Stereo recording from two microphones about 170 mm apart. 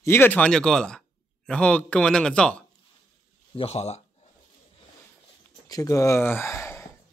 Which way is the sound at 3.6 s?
40° left (ahead or behind).